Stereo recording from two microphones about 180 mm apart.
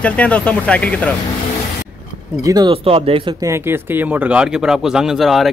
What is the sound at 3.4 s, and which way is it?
Speech, 15° right (ahead or behind).